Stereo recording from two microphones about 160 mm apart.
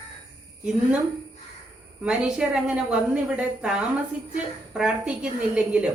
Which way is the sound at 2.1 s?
5° right (ahead or behind).